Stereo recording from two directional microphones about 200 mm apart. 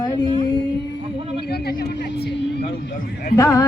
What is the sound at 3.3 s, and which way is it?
Speech, 15° left (ahead or behind).